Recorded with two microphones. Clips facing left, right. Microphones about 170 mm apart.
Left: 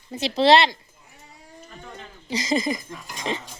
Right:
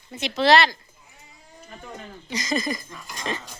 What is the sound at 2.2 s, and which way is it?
Speech, 30° left (ahead or behind).